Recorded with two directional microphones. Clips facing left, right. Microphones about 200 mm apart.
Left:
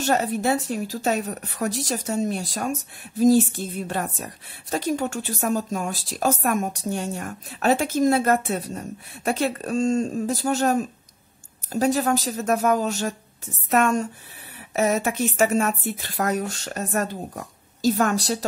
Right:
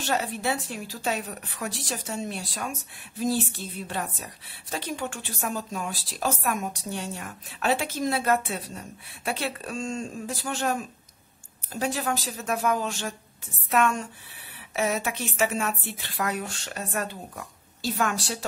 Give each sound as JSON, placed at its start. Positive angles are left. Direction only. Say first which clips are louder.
{"t": 0.0, "sound": "a woman's voice", "louder": "left 6 dB", "side_deg": 45}